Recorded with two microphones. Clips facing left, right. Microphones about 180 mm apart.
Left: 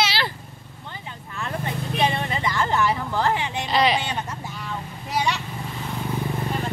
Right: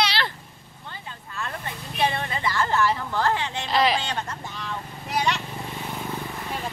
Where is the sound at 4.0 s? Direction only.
10° left (ahead or behind).